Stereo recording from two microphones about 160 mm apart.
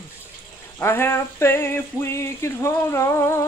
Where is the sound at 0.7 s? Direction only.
15° left (ahead or behind).